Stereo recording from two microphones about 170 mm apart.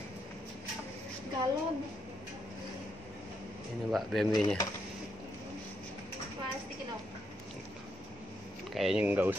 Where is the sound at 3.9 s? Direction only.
Centre (ahead or behind).